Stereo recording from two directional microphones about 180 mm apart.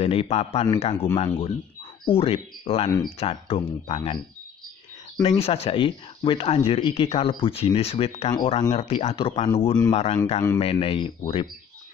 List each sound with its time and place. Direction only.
0.0 s speech: 35° left (ahead or behind)